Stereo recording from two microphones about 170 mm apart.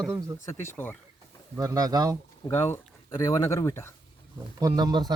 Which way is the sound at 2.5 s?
15° left (ahead or behind).